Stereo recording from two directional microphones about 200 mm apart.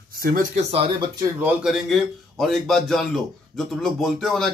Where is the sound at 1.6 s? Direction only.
Centre (ahead or behind).